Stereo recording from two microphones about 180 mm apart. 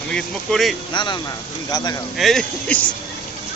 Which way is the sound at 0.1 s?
Centre (ahead or behind).